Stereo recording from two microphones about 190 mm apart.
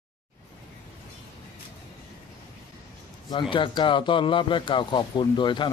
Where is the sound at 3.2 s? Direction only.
25° left (ahead or behind).